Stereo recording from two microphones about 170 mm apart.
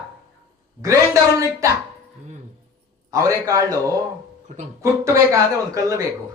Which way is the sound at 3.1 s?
20° right (ahead or behind).